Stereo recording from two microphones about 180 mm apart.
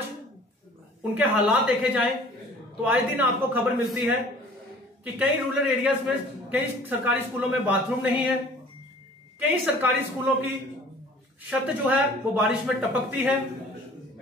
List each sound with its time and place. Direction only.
1.1 s a man's voice: 10° right (ahead or behind)
9.4 s a man's voice: 10° right (ahead or behind)
11.6 s a man's voice: 5° right (ahead or behind)